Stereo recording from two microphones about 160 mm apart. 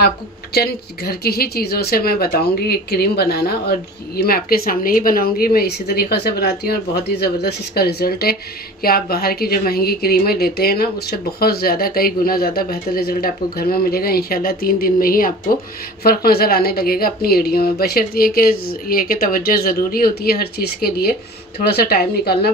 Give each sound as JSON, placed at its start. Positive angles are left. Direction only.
{"t": 0.0, "sound": "a woman's voice", "side_deg": 75}